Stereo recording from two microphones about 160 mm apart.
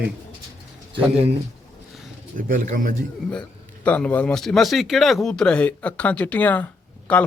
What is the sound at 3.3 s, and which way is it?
Speech, 5° left (ahead or behind).